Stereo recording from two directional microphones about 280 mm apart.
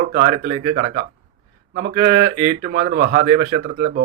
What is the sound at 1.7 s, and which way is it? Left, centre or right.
A man's voice, right.